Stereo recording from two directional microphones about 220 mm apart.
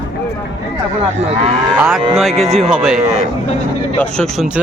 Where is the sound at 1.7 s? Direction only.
5° right (ahead or behind).